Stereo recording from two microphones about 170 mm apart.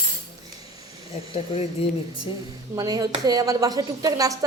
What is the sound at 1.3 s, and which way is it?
Speech, 35° left (ahead or behind).